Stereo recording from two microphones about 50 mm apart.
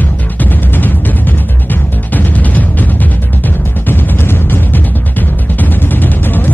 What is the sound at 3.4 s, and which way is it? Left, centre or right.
Music, left.